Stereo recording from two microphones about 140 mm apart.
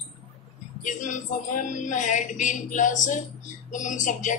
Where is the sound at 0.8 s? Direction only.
65° left (ahead or behind).